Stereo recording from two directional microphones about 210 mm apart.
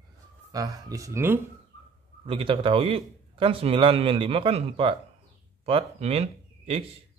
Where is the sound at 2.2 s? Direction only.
25° right (ahead or behind).